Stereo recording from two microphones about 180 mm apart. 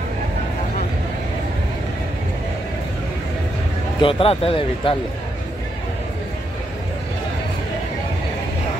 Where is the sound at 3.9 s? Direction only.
30° left (ahead or behind).